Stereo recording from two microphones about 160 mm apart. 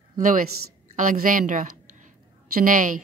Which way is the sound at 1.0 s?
55° right (ahead or behind).